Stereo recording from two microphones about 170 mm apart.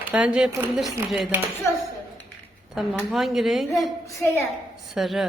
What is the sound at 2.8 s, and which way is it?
Speech, centre (ahead or behind).